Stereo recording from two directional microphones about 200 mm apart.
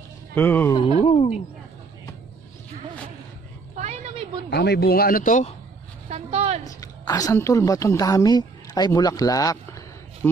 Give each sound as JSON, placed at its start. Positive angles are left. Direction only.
{"t": 0.3, "sound": "speech", "side_deg": 10}
{"t": 1.0, "sound": "speech", "side_deg": 30}
{"t": 3.7, "sound": "a sound", "side_deg": -35}
{"t": 4.5, "sound": "speech", "side_deg": 55}
{"t": 6.0, "sound": "a woman's voice", "side_deg": -30}
{"t": 6.6, "sound": "a woman's voice", "side_deg": 15}